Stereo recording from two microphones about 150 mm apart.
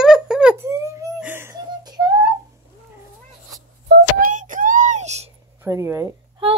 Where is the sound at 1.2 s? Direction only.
15° right (ahead or behind).